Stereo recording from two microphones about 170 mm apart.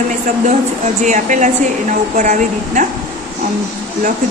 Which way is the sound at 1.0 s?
45° right (ahead or behind).